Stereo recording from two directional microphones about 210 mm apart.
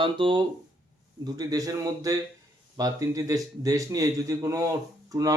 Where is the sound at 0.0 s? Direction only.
25° right (ahead or behind).